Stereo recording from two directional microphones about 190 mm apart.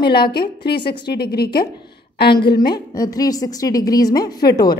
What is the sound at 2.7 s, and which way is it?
A woman's voice, 20° left (ahead or behind).